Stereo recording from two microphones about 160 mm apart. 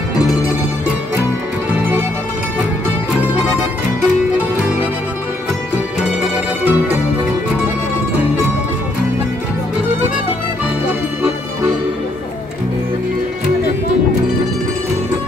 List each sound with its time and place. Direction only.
6.2 s music: 10° right (ahead or behind)